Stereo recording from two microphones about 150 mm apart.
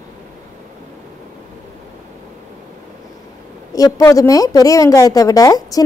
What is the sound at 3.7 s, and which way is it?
A woman's voice, 25° left (ahead or behind).